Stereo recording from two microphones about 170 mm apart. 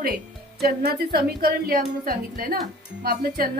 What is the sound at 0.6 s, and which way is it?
A woman's voice, 65° right (ahead or behind).